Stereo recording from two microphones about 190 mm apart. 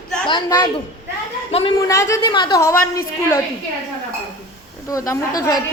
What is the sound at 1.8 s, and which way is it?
A woman's voice, 15° left (ahead or behind).